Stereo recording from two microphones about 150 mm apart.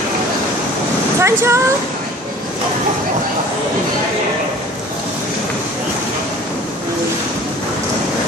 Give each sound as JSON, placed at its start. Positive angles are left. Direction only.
{"t": 1.2, "sound": "speech", "side_deg": -20}